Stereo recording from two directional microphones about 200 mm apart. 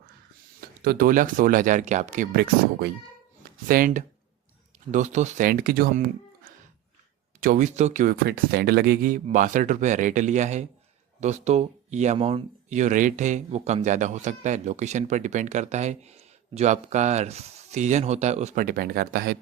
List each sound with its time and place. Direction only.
0.9 s speech: 45° right (ahead or behind)
8.1 s speech: 50° right (ahead or behind)